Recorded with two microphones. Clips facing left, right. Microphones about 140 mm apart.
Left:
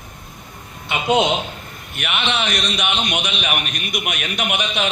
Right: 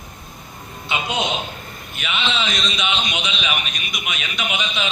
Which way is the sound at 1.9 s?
60° left (ahead or behind).